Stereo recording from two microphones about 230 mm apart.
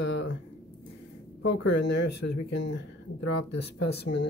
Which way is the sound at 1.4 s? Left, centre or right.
Left.